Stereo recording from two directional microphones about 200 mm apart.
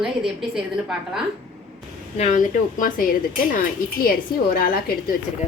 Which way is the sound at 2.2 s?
40° left (ahead or behind).